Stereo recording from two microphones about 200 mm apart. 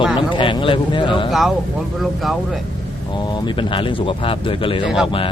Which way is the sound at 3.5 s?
25° left (ahead or behind).